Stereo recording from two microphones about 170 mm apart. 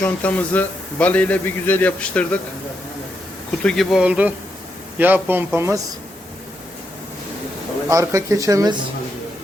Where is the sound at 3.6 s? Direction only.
Centre (ahead or behind); by 5.8 s 15° right (ahead or behind).